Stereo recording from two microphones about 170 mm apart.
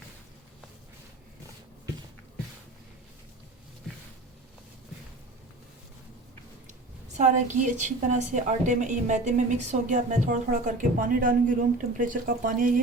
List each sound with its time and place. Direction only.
7.2 s a woman's voice: 45° right (ahead or behind)